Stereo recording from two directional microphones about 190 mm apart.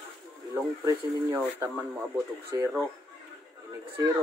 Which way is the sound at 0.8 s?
15° right (ahead or behind).